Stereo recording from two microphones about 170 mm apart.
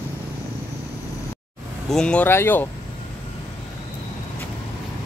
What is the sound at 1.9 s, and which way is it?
Speech, 5° left (ahead or behind).